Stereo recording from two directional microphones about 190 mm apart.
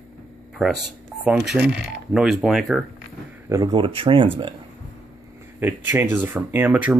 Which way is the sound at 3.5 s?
20° right (ahead or behind).